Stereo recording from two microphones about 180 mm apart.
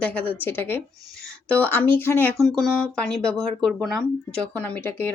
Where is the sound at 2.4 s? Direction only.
Centre (ahead or behind).